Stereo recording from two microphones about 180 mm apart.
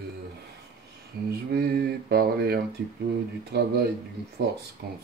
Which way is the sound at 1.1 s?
60° right (ahead or behind).